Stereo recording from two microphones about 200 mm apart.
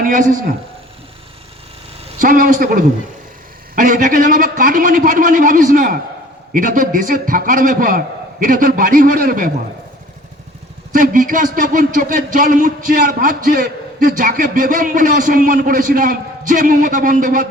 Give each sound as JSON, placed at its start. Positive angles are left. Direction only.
{"t": 0.0, "sound": "a man's voice", "side_deg": -40}
{"t": 2.1, "sound": "a man's voice", "side_deg": -40}
{"t": 10.9, "sound": "speech", "side_deg": -40}